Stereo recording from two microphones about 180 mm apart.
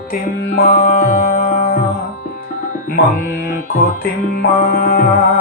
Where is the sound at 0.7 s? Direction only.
50° left (ahead or behind).